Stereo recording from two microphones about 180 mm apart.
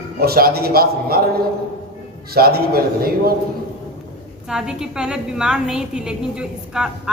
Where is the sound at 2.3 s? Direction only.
55° right (ahead or behind).